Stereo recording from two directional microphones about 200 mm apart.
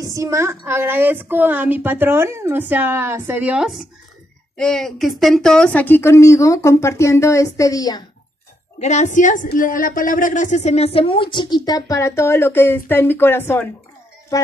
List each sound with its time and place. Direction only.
0.0 s a woman's voice: 15° right (ahead or behind); by 8.0 s 15° left (ahead or behind)
8.7 s a woman's voice: 35° left (ahead or behind); by 13.7 s 10° left (ahead or behind)